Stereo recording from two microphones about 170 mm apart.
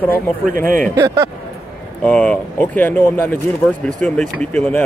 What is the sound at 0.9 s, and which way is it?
Speech, 15° right (ahead or behind).